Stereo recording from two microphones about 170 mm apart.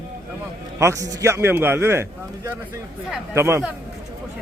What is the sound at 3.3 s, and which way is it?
Speech, 15° right (ahead or behind).